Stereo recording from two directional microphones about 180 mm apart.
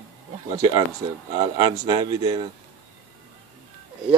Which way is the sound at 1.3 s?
25° right (ahead or behind).